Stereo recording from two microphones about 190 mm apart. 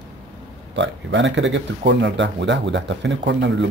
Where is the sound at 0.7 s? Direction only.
75° right (ahead or behind).